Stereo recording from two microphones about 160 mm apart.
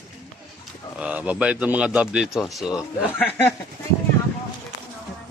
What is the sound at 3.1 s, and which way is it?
Speech, 10° left (ahead or behind).